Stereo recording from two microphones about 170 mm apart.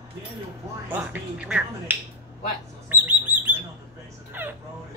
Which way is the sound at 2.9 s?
10° right (ahead or behind).